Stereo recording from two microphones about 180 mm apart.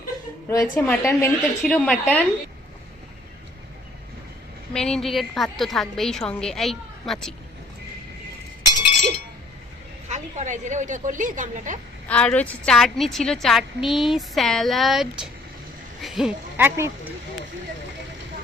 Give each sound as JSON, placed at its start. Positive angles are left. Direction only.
{"t": 0.4, "sound": "a woman's voice", "side_deg": 15}
{"t": 4.7, "sound": "a woman's voice", "side_deg": 5}
{"t": 10.1, "sound": "a woman's voice", "side_deg": -40}
{"t": 12.0, "sound": "a woman's voice", "side_deg": 5}